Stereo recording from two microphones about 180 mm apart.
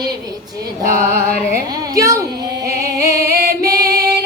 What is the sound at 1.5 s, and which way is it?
Speech, 15° right (ahead or behind).